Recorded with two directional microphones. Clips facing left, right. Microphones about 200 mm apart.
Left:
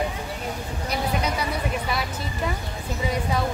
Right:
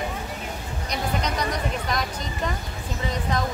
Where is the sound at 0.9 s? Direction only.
5° left (ahead or behind).